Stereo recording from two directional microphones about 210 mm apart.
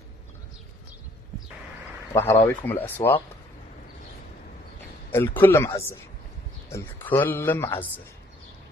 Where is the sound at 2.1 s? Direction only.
15° left (ahead or behind).